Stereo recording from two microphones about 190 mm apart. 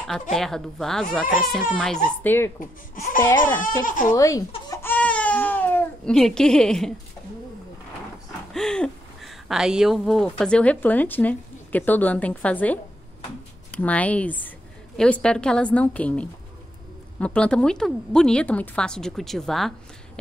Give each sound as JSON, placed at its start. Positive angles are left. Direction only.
{"t": 0.3, "sound": "a woman's voice", "side_deg": 0}
{"t": 2.2, "sound": "speech", "side_deg": 10}
{"t": 3.8, "sound": "speech", "side_deg": 45}
{"t": 4.1, "sound": "speech", "side_deg": 20}
{"t": 4.6, "sound": "baby cry", "side_deg": 10}
{"t": 8.5, "sound": "a woman's voice", "side_deg": 5}